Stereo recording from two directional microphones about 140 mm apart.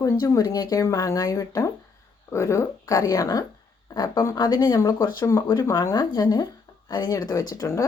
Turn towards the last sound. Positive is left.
turn(degrees=25)  # may be behind; listen again after turning